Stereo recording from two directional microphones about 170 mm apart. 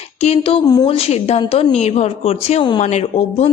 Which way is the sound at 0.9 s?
35° left (ahead or behind).